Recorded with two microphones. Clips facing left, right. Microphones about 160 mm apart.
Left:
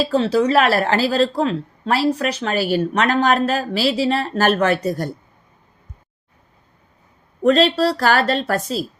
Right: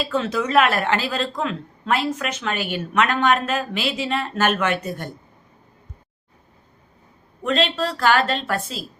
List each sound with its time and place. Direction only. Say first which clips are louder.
0.0 s speech: left 6 dB; 35° left (ahead or behind)
7.4 s speech: left 7 dB; 40° left (ahead or behind)